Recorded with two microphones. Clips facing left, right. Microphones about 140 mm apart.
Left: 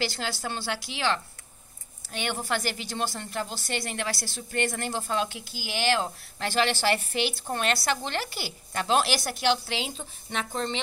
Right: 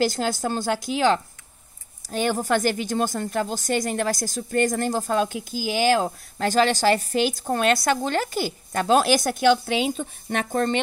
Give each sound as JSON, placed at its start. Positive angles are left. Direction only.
{"t": 0.0, "sound": "a woman's voice", "side_deg": -45}